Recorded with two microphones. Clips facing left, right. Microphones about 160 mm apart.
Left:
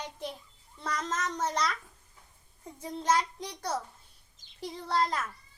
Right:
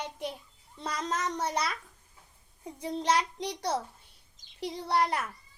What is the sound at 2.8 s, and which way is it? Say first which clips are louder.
Child singing: even; 75° right (ahead or behind).